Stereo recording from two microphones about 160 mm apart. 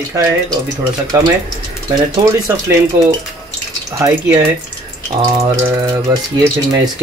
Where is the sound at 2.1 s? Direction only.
20° right (ahead or behind).